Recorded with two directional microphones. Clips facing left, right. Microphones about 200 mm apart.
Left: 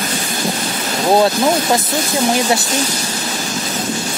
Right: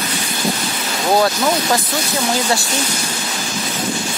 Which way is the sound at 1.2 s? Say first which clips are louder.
Left 3 dB; 20° left (ahead or behind).